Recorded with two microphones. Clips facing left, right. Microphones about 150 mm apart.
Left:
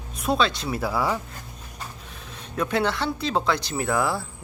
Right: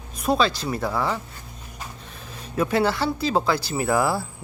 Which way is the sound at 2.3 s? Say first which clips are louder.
Right 3 dB; 5° right (ahead or behind).